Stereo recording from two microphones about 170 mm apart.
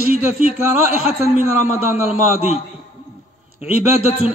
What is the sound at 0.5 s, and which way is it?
A man's voice, 35° left (ahead or behind).